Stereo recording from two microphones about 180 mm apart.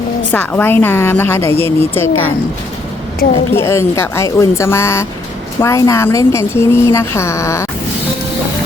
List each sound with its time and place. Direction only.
0.3 s speech: 10° left (ahead or behind)
3.5 s speech: 15° left (ahead or behind)